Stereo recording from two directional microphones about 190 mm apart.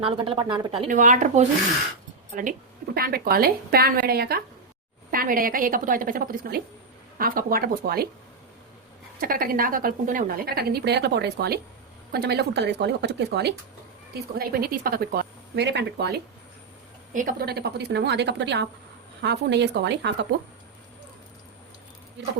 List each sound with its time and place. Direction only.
0.0 s a woman's voice: 25° right (ahead or behind)
0.9 s a woman's voice: 45° right (ahead or behind)
9.2 s a woman's voice: 50° right (ahead or behind)
14.1 s a woman's voice: 50° right (ahead or behind)